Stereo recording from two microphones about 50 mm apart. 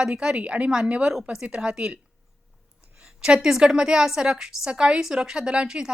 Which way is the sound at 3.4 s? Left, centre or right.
Centre.